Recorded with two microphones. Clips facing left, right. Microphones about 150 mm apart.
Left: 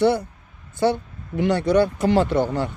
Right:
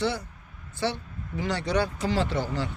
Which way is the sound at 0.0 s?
55° left (ahead or behind).